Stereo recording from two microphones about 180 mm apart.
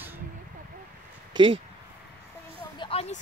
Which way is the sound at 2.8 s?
30° left (ahead or behind).